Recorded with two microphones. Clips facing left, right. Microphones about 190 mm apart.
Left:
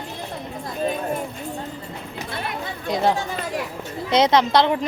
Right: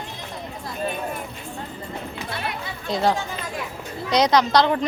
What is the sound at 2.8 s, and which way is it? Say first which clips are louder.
A woman's voice: left 1 dB; 20° left (ahead or behind).